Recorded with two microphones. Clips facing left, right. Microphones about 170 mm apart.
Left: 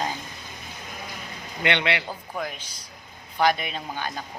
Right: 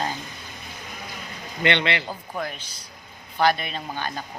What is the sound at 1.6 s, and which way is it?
Speech, 5° left (ahead or behind).